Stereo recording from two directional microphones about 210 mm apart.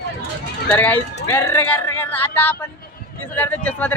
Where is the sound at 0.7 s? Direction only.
10° left (ahead or behind).